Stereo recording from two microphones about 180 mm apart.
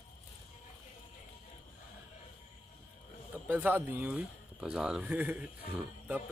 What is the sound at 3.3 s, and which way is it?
Speech, 10° right (ahead or behind).